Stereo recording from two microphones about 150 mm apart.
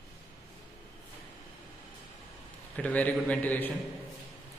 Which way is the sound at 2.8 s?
10° left (ahead or behind).